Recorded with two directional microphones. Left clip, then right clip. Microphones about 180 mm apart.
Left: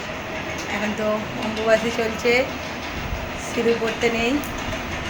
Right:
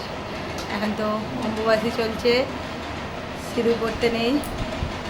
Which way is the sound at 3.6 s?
Centre (ahead or behind).